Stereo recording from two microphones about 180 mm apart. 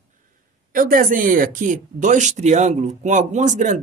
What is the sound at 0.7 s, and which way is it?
Speech, 50° right (ahead or behind).